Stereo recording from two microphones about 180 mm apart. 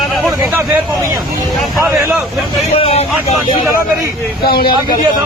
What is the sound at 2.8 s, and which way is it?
Speech, 35° left (ahead or behind).